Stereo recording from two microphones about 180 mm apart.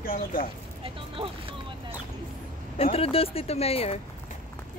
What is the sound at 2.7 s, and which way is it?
Speech, 35° left (ahead or behind).